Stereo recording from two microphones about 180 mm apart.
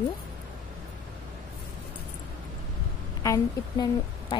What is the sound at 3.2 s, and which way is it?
A woman's voice, 20° left (ahead or behind).